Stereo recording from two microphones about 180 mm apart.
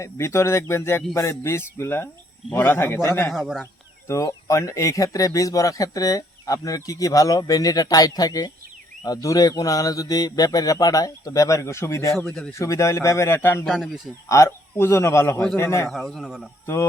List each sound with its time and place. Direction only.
0.0 s speech: 15° left (ahead or behind)
3.3 s a man's voice: centre (ahead or behind)
4.1 s speech: 15° left (ahead or behind)
13.7 s a man's voice: centre (ahead or behind)
14.3 s speech: 15° left (ahead or behind)
15.9 s a man's voice: centre (ahead or behind)